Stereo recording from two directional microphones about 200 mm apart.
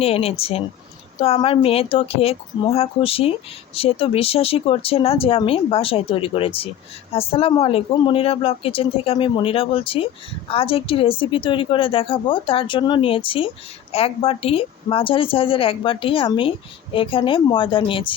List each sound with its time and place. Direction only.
0.0 s a woman's voice: 30° left (ahead or behind)